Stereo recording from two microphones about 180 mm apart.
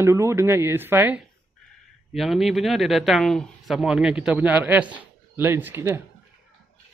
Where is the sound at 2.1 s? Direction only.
Centre (ahead or behind).